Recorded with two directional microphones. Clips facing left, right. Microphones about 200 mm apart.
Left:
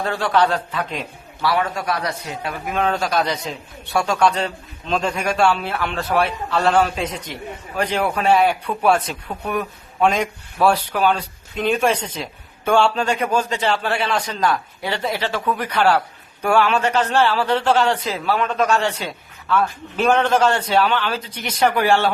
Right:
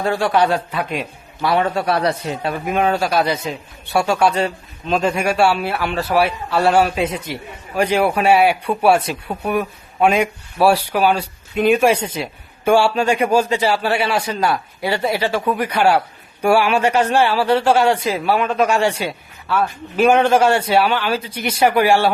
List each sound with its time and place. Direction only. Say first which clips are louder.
0.0 s speech: right 2 dB; 10° right (ahead or behind)
1.5 s a man's voice: right 4 dB; 30° right (ahead or behind)
2.7 s speech: right 2 dB; 10° right (ahead or behind)